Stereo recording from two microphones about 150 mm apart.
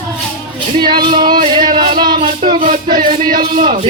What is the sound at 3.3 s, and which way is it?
Speech, 65° right (ahead or behind).